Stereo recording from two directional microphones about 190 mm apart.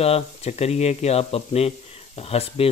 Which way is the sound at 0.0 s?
35° left (ahead or behind).